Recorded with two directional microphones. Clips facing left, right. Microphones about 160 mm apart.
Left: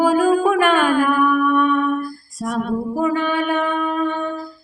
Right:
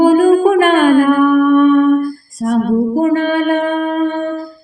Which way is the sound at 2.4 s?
45° right (ahead or behind).